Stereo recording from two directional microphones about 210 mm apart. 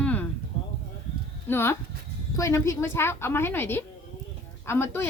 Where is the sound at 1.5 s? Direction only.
10° left (ahead or behind).